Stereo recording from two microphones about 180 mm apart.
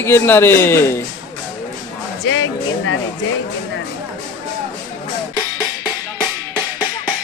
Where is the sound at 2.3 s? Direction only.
90° left.